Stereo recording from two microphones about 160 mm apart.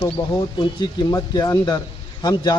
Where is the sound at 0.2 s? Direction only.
25° left (ahead or behind).